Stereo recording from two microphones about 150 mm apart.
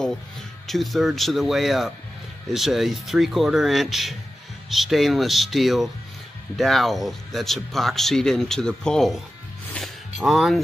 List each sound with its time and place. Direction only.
0.7 s speech: centre (ahead or behind)
9.8 s music: centre (ahead or behind)